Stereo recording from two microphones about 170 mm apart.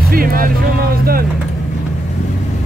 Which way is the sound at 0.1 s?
60° right (ahead or behind).